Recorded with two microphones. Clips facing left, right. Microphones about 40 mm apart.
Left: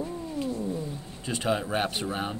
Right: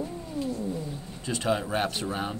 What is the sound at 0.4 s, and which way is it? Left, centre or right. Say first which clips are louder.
Wild animals: even; left.